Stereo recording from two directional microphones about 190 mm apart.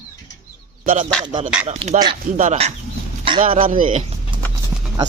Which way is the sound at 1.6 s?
35° right (ahead or behind).